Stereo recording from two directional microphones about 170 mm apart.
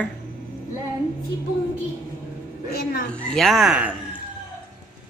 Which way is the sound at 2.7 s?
65° left (ahead or behind).